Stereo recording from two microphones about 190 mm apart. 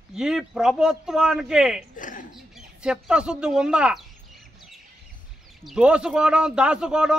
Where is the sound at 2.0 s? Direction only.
45° left (ahead or behind).